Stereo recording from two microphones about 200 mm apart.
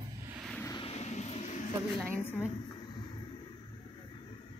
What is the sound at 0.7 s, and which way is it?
Vehicle, 30° left (ahead or behind).